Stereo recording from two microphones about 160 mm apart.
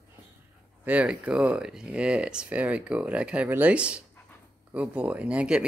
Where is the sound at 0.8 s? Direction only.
10° right (ahead or behind).